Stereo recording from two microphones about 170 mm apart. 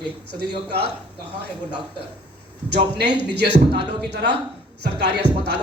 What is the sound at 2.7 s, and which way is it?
A man's voice, 80° right.